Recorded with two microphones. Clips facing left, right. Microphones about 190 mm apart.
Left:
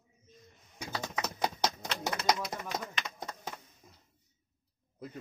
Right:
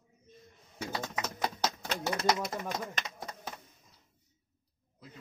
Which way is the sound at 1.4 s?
20° left (ahead or behind).